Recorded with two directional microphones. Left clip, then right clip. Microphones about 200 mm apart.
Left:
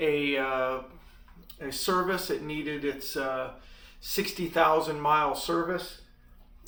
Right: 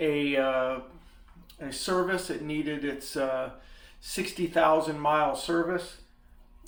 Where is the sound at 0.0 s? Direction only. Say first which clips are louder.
Right 1 dB; 25° right (ahead or behind).